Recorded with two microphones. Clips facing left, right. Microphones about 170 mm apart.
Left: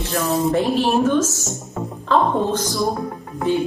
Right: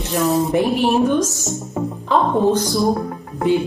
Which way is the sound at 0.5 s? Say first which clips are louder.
Right 1 dB; 15° right (ahead or behind).